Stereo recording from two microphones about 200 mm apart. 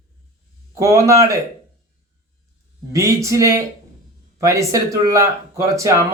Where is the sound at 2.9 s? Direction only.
15° right (ahead or behind).